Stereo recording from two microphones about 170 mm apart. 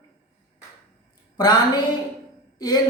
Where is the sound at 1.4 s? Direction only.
25° left (ahead or behind).